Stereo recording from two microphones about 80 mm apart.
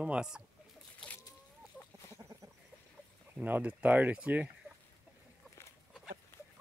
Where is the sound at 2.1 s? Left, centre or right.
Right.